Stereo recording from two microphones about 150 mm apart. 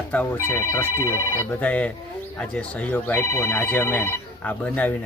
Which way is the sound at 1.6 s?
10° left (ahead or behind).